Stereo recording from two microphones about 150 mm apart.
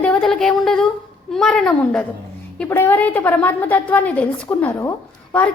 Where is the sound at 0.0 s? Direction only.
5° left (ahead or behind).